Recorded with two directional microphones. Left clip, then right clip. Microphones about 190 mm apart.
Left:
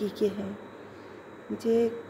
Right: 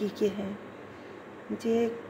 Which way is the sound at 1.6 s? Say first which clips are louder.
Left 3 dB; 5° left (ahead or behind).